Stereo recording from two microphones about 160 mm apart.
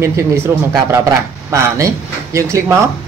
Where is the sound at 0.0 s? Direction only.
15° right (ahead or behind).